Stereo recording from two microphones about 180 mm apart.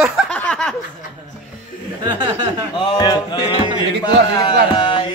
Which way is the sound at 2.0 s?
25° right (ahead or behind).